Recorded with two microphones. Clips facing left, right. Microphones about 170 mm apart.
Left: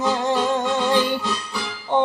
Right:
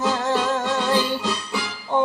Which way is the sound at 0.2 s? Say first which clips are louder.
Left 1 dB; 20° left (ahead or behind).